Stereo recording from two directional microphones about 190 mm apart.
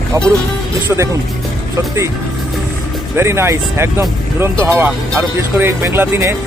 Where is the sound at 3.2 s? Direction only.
15° right (ahead or behind).